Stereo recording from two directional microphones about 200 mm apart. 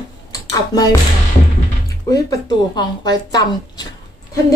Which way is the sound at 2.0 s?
15° left (ahead or behind).